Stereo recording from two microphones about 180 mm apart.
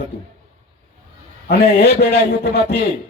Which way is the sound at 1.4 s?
60° left (ahead or behind).